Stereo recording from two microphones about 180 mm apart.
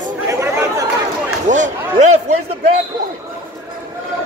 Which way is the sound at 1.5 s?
40° right (ahead or behind).